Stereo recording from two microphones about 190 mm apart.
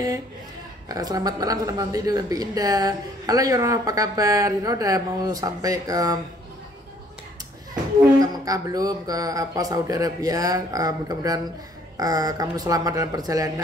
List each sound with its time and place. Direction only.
0.8 s speech: 20° right (ahead or behind)
8.2 s speech: 20° right (ahead or behind)